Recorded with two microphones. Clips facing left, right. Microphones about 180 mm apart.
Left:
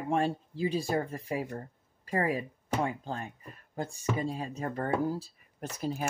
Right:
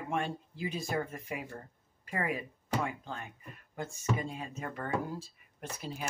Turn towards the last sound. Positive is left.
turn(degrees=45)  # may be behind; listen again after turning